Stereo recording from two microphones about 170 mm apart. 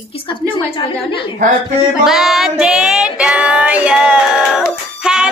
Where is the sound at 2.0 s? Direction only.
Centre (ahead or behind).